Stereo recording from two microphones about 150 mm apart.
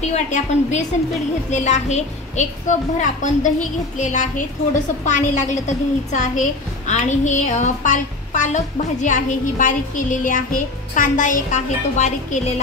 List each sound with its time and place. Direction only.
0.1 s a woman's voice: 50° left (ahead or behind)